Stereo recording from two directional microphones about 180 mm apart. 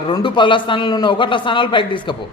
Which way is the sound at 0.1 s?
25° left (ahead or behind).